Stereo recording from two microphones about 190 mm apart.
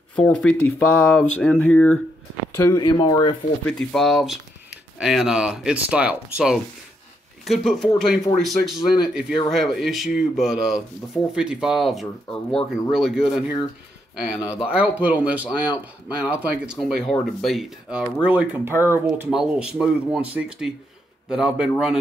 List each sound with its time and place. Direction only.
0.1 s speech: 5° left (ahead or behind)
2.5 s speech: 15° left (ahead or behind)
3.6 s speech: centre (ahead or behind)